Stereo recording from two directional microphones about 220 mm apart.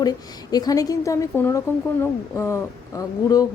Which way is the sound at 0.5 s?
15° left (ahead or behind).